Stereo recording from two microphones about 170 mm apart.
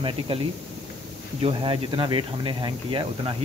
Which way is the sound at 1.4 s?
30° right (ahead or behind).